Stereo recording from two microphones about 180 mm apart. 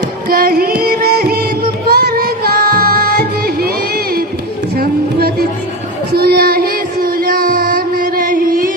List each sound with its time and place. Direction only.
0.3 s music: 55° right (ahead or behind)
6.1 s child singing: 60° right (ahead or behind)